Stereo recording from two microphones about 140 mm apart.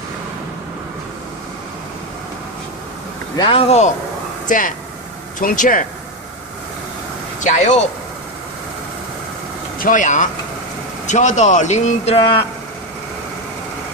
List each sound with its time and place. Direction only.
3.3 s speech: 40° left (ahead or behind)
4.5 s speech: 70° left (ahead or behind)
7.4 s speech: 60° left (ahead or behind)
9.8 s speech: 70° left (ahead or behind); by 12.4 s 40° left (ahead or behind)